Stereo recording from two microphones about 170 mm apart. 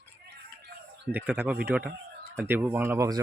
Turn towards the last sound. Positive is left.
turn(degrees=-20)  # may be behind; listen again after turning